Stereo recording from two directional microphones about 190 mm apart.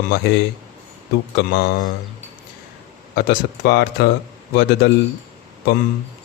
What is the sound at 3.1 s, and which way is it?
Speech, 60° left (ahead or behind).